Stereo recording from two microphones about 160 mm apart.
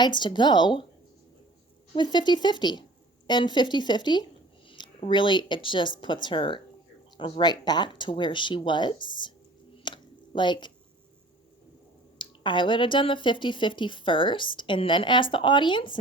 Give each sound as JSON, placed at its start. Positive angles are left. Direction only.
{"t": 0.0, "sound": "speech", "side_deg": 30}
{"t": 2.0, "sound": "speech", "side_deg": 30}
{"t": 9.8, "sound": "a sound", "side_deg": 30}
{"t": 12.2, "sound": "speech", "side_deg": 30}